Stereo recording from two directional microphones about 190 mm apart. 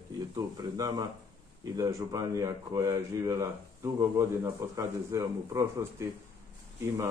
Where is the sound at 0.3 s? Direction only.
20° right (ahead or behind).